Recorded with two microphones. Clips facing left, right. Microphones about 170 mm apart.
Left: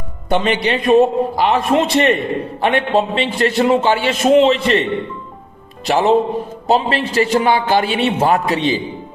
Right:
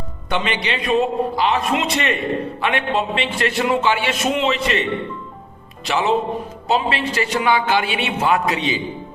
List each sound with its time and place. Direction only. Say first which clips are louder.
0.3 s a man's voice: left 6 dB; 45° left (ahead or behind)
1.5 s a man's voice: left 6 dB; 35° left (ahead or behind)
5.8 s a man's voice: left 5 dB; 45° left (ahead or behind)